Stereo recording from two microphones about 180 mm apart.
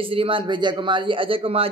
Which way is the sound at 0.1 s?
30° right (ahead or behind).